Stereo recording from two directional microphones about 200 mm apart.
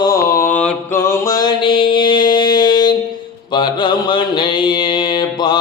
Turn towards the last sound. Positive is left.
turn(degrees=20)  # may be behind; listen again after turning